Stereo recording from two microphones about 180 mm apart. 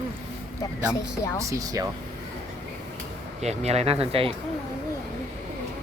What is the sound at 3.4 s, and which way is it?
Speech, 35° right (ahead or behind).